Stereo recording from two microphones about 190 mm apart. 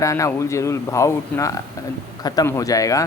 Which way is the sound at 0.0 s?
15° left (ahead or behind).